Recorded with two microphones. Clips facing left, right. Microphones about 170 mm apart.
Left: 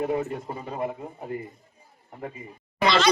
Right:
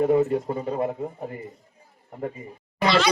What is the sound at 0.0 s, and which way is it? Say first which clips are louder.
Speech: right 7 dB; 40° right (ahead or behind).